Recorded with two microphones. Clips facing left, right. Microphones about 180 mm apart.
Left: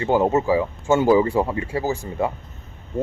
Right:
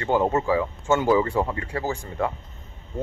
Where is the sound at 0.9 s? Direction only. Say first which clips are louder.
Left 4 dB; 25° left (ahead or behind).